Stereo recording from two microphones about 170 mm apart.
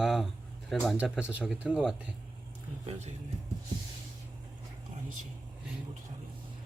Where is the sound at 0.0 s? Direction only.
Centre (ahead or behind).